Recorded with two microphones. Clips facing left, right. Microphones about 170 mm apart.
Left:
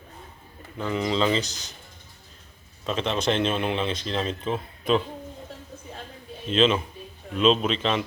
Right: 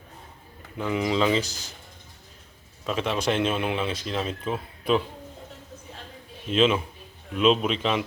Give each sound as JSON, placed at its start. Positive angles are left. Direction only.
{"t": 0.8, "sound": "speech", "side_deg": -10}
{"t": 2.8, "sound": "speech", "side_deg": -10}
{"t": 6.5, "sound": "speech", "side_deg": -10}